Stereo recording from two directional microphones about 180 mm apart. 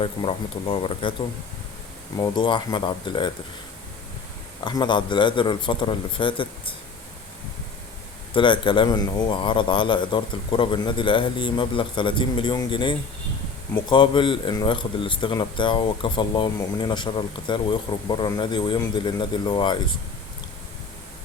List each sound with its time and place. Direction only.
0.0 s speech: 30° left (ahead or behind)
2.1 s speech: 20° left (ahead or behind)
4.6 s speech: 25° left (ahead or behind)
8.3 s speech: 25° left (ahead or behind)